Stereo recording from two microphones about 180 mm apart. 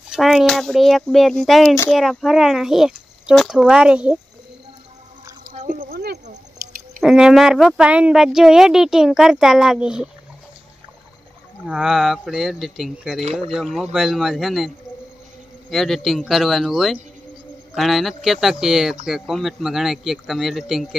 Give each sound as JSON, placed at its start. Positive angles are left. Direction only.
{"t": 0.1, "sound": "speech", "side_deg": 0}
{"t": 5.5, "sound": "speech", "side_deg": -45}
{"t": 7.0, "sound": "speech", "side_deg": -5}
{"t": 11.6, "sound": "speech", "side_deg": -5}
{"t": 15.7, "sound": "speech", "side_deg": 0}